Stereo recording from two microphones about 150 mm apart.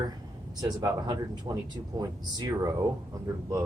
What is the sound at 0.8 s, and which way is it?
Speech, 30° right (ahead or behind).